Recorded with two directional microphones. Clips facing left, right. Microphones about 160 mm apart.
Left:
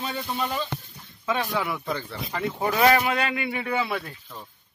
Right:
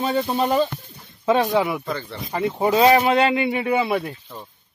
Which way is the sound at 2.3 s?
20° right (ahead or behind).